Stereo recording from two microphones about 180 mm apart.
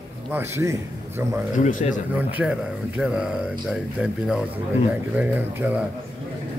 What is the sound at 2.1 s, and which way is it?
A man's voice, 10° right (ahead or behind).